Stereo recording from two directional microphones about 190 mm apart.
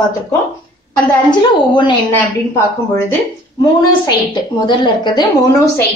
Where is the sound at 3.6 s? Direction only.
25° left (ahead or behind).